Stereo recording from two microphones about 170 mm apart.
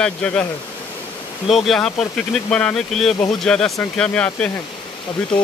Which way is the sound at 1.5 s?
Centre (ahead or behind).